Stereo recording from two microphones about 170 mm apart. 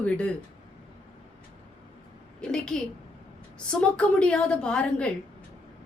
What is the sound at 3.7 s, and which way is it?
A woman's voice, 5° left (ahead or behind).